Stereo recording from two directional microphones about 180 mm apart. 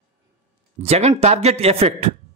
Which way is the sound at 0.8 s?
35° right (ahead or behind).